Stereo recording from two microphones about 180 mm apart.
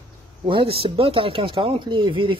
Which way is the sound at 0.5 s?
30° right (ahead or behind).